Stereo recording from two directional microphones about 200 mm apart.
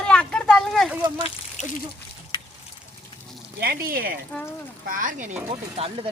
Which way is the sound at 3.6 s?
50° right (ahead or behind).